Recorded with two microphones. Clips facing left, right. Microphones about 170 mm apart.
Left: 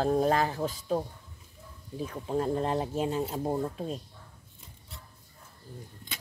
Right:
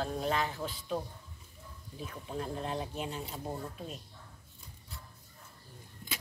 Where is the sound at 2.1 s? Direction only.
45° left (ahead or behind).